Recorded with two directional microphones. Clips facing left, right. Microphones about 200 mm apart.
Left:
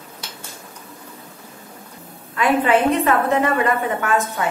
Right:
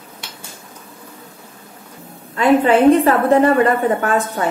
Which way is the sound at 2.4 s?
30° right (ahead or behind).